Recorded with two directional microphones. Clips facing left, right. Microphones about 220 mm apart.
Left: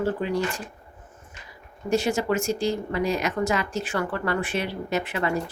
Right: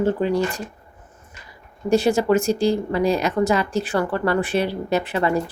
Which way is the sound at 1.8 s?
35° right (ahead or behind).